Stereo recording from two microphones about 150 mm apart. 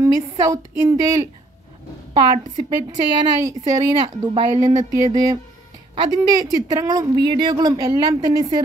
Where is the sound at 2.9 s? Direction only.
25° right (ahead or behind).